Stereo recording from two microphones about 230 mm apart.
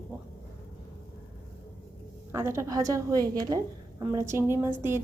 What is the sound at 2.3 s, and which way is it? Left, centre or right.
A woman's voice, centre.